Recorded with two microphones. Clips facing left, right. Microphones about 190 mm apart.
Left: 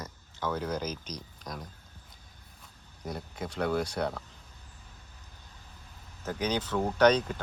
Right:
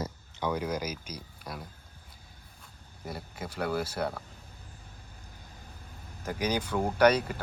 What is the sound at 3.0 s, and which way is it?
Speech, 5° right (ahead or behind).